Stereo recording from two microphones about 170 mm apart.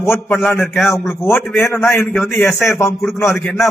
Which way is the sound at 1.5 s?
15° left (ahead or behind).